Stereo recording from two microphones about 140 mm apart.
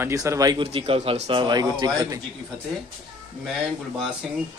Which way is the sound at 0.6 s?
40° right (ahead or behind).